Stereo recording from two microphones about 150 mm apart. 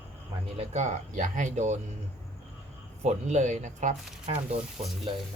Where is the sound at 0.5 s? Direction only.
50° right (ahead or behind).